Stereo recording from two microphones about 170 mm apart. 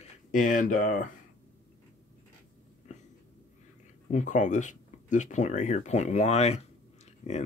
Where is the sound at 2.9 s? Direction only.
45° left (ahead or behind).